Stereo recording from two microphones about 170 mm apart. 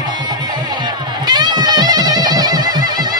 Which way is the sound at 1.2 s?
25° right (ahead or behind).